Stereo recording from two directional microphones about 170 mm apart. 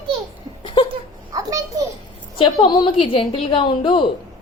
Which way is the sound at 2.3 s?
30° left (ahead or behind).